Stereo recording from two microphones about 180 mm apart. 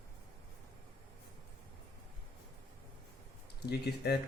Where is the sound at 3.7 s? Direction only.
65° left (ahead or behind).